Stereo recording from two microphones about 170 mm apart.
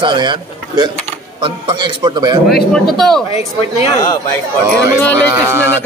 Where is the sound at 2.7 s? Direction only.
5° left (ahead or behind).